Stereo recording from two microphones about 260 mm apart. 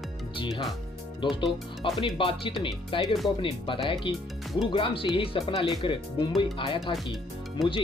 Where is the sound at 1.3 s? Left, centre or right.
Centre.